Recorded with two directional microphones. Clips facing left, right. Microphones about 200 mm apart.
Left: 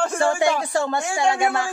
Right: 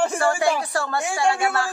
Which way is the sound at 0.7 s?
20° left (ahead or behind).